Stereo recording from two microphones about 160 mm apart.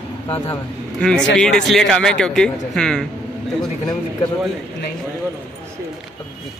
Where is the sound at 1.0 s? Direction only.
5° left (ahead or behind).